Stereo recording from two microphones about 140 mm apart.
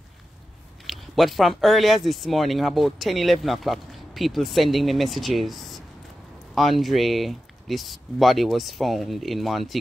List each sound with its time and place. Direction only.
0.8 s speech: centre (ahead or behind)